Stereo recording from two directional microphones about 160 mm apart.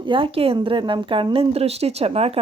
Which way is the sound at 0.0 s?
30° right (ahead or behind).